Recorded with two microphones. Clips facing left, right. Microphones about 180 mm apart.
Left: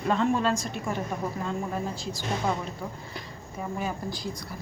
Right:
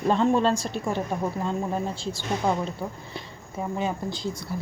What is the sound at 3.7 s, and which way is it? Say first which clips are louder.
Speech: right 3 dB; 25° right (ahead or behind).